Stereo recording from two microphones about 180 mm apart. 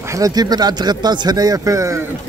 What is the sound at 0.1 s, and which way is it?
A man's voice, 20° right (ahead or behind).